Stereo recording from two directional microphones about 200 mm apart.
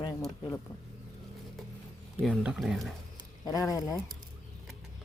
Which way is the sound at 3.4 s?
20° left (ahead or behind).